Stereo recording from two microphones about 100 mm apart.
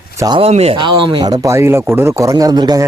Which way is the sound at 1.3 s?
35° right (ahead or behind).